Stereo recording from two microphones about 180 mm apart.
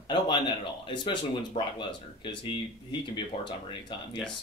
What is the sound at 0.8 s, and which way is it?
Speech, 25° left (ahead or behind).